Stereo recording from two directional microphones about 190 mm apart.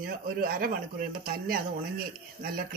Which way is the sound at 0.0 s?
55° right (ahead or behind).